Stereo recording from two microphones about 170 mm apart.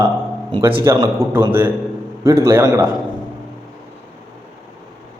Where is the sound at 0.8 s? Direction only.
15° right (ahead or behind).